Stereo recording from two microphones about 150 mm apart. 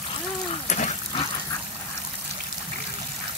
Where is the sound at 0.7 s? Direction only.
50° left (ahead or behind).